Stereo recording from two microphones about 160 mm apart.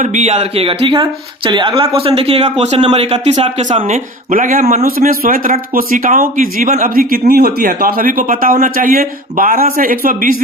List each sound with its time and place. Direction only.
0.0 s speech: 45° right (ahead or behind)
4.9 s speech: 65° right (ahead or behind)